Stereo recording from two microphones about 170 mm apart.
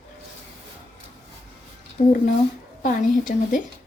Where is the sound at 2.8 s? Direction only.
50° left (ahead or behind).